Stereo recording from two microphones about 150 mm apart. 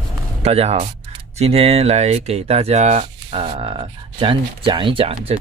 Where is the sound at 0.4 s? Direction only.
45° right (ahead or behind).